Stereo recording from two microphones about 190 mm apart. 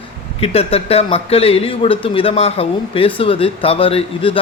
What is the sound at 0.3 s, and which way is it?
Speech, 30° left (ahead or behind).